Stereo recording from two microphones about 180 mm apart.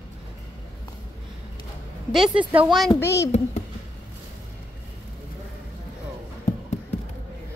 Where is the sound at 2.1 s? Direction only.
5° right (ahead or behind).